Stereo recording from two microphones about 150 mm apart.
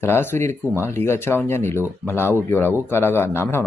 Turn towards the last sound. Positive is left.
turn(degrees=15)  # may be behind; listen again after turning